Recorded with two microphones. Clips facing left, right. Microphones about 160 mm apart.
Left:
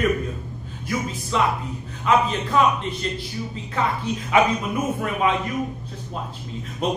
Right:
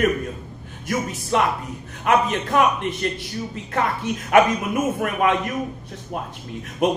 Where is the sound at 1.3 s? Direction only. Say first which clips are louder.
Right 2 dB; 60° right (ahead or behind).